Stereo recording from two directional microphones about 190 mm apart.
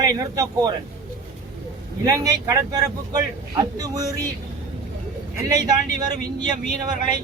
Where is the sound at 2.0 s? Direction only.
20° right (ahead or behind).